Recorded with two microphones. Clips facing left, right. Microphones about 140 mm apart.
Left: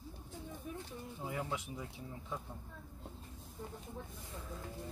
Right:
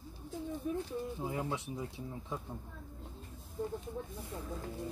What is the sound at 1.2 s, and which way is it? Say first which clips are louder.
Speech: left 2 dB; 20° right (ahead or behind).